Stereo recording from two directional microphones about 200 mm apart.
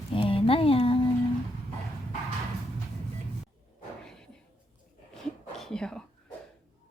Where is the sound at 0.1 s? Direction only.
25° left (ahead or behind).